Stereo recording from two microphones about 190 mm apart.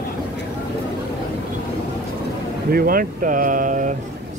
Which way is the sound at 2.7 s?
50° right (ahead or behind).